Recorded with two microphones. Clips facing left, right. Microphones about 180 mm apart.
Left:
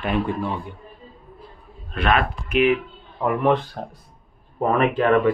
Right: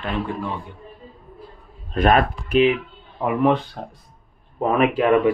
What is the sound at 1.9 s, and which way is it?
Speech, 45° right (ahead or behind).